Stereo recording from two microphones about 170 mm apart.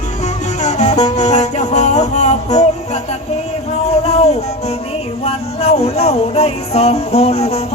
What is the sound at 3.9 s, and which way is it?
Music, 40° left (ahead or behind).